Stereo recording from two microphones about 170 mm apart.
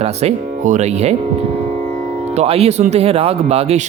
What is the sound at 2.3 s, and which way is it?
Speech, 35° right (ahead or behind).